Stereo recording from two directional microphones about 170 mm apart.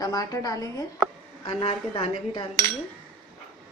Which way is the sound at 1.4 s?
30° left (ahead or behind).